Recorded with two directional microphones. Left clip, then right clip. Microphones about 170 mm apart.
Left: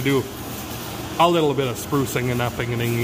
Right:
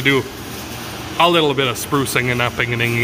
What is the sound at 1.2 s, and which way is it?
Speech, 10° left (ahead or behind).